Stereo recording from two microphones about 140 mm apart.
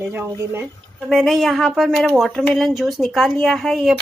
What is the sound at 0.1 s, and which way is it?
Speech, 15° right (ahead or behind).